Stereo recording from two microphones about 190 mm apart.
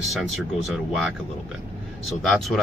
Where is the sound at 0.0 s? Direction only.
Centre (ahead or behind).